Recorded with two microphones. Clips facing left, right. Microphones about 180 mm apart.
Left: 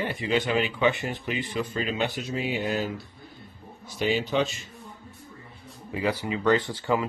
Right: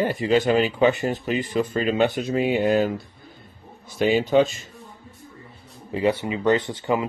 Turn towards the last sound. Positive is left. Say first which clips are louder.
# right 2 dB
turn(degrees=-20)  # may be behind; listen again after turning